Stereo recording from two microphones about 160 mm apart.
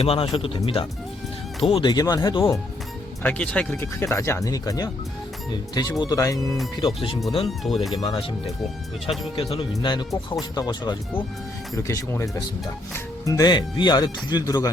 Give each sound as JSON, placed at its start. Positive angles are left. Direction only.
{"t": 0.0, "sound": "speech", "side_deg": 35}
{"t": 3.2, "sound": "speech", "side_deg": 5}
{"t": 6.8, "sound": "speech", "side_deg": 35}
{"t": 7.4, "sound": "speech", "side_deg": 0}
{"t": 7.9, "sound": "speech", "side_deg": 25}
{"t": 8.4, "sound": "speech", "side_deg": 0}
{"t": 9.3, "sound": "speech", "side_deg": 35}